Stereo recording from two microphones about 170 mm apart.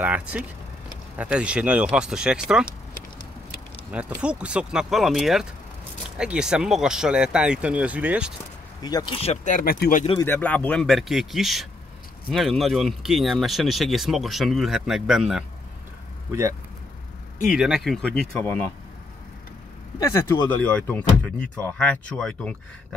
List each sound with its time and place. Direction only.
0.0 s speech: 10° right (ahead or behind)
3.9 s speech: 5° right (ahead or behind)
8.8 s speech: 25° left (ahead or behind); by 10.0 s 55° left (ahead or behind)
10.2 s speech: 10° left (ahead or behind)
16.3 s speech: 20° right (ahead or behind)
17.5 s speech: centre (ahead or behind)
20.0 s speech: 15° left (ahead or behind)